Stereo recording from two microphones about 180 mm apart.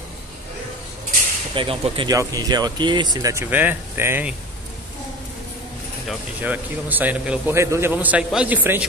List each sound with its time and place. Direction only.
1.5 s a man's voice: 30° right (ahead or behind); by 4.4 s 10° right (ahead or behind)
6.0 s a man's voice: 10° right (ahead or behind)